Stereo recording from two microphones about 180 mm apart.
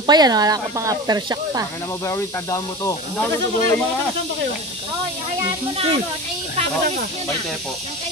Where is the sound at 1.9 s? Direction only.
15° left (ahead or behind).